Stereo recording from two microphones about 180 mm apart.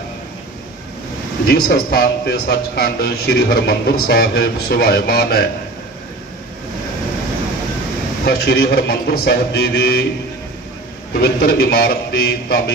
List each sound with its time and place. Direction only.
1.5 s a man's voice: 55° left (ahead or behind)
8.3 s a man's voice: 60° left (ahead or behind)
11.1 s a man's voice: 60° left (ahead or behind)